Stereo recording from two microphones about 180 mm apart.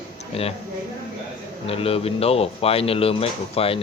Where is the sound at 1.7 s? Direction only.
30° left (ahead or behind).